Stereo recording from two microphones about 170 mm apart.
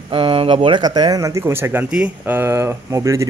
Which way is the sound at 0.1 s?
30° right (ahead or behind).